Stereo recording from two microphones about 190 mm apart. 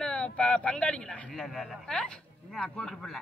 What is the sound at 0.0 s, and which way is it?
Speech, 5° left (ahead or behind).